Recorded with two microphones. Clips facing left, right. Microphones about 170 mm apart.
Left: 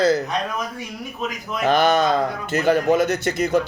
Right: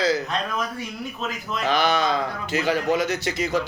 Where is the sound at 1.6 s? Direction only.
50° left (ahead or behind).